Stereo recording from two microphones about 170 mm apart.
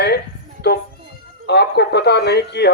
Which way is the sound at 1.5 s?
75° left (ahead or behind).